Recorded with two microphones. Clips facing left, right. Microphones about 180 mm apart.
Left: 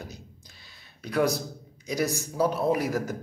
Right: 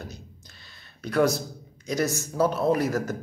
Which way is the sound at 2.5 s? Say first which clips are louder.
Right 2 dB; 10° left (ahead or behind).